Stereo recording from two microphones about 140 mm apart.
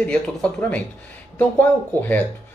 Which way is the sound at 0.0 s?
10° left (ahead or behind).